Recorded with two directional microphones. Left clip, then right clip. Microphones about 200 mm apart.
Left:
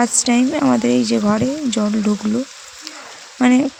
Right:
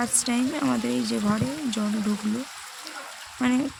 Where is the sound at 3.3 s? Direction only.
35° left (ahead or behind).